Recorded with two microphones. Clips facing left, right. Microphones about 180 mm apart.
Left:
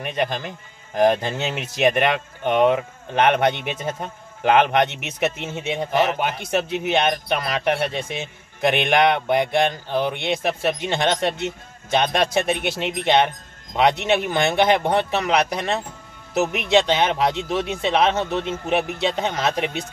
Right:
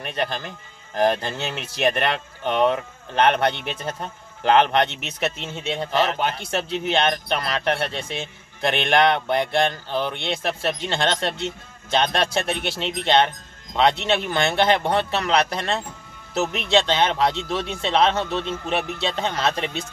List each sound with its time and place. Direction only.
0.0 s speech: 15° left (ahead or behind)